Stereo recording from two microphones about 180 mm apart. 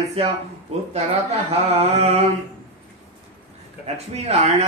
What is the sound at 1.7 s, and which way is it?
Mantra, 35° right (ahead or behind).